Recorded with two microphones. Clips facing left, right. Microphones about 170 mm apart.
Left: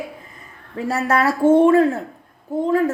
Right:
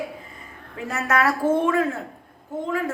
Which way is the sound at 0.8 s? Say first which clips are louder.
Left 3 dB; 30° left (ahead or behind).